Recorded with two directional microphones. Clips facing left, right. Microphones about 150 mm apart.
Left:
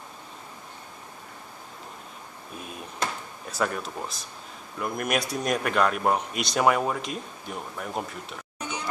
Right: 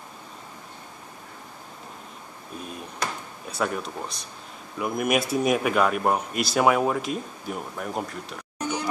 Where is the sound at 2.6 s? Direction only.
Centre (ahead or behind).